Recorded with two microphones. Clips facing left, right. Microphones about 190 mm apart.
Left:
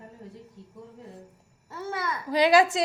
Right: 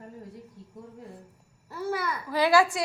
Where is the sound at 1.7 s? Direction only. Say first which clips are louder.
Right 2 dB; 25° left (ahead or behind).